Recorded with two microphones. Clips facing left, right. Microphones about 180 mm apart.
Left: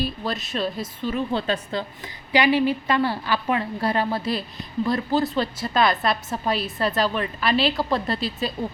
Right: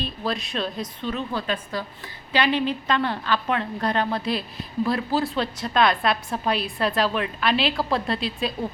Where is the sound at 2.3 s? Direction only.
10° left (ahead or behind).